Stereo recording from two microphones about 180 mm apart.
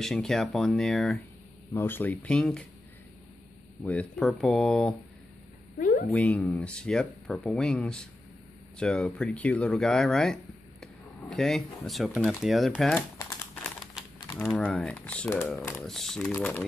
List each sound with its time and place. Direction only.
0.0 s speech: centre (ahead or behind)
3.8 s speech: 5° left (ahead or behind)
5.8 s a sound: 50° left (ahead or behind)
6.1 s speech: 5° left (ahead or behind)
13.2 s crumpling: 20° left (ahead or behind)
14.4 s speech: 5° left (ahead or behind)
15.8 s speech: centre (ahead or behind)